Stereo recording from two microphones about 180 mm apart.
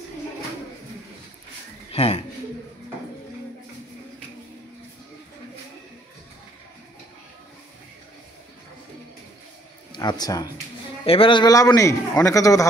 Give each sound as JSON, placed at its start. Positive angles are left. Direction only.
{"t": 1.9, "sound": "speech", "side_deg": 35}
{"t": 9.9, "sound": "a man's voice", "side_deg": 25}